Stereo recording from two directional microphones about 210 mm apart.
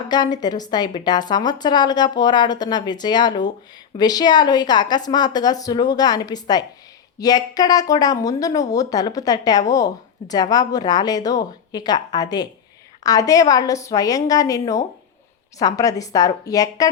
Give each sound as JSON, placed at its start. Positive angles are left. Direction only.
{"t": 0.1, "sound": "a woman's voice", "side_deg": 20}